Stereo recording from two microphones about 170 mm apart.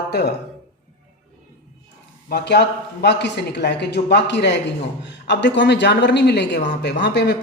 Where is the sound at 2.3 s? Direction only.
75° left (ahead or behind).